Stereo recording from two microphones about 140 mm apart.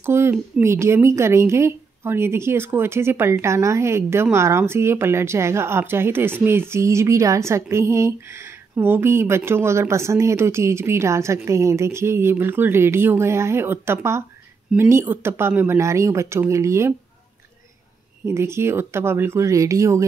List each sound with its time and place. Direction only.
0.0 s a woman's voice: 20° right (ahead or behind)
18.2 s a woman's voice: 20° right (ahead or behind)